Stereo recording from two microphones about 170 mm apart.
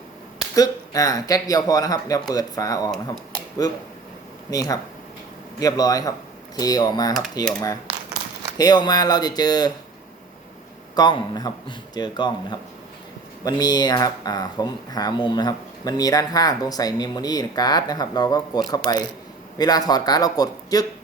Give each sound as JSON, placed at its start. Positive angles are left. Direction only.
{"t": 0.5, "sound": "speech", "side_deg": 20}
{"t": 8.5, "sound": "speech", "side_deg": 25}
{"t": 10.9, "sound": "speech", "side_deg": 25}